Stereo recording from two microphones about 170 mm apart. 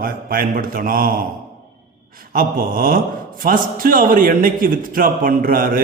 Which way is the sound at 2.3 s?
55° right (ahead or behind).